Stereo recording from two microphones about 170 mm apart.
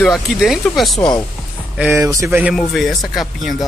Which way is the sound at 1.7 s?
15° right (ahead or behind).